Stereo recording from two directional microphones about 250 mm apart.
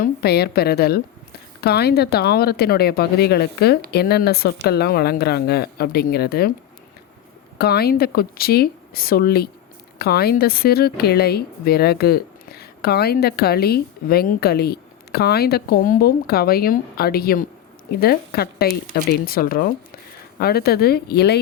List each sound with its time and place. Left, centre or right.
0.0 s speech: left
7.6 s speech: left